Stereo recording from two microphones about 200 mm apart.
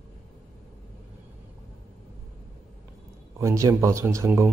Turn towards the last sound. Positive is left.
turn(degrees=-15)  # may be behind; listen again after turning